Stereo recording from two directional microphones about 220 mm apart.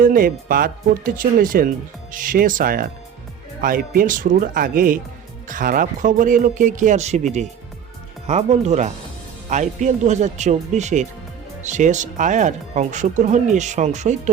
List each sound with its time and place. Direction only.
0.0 s speech: 40° right (ahead or behind)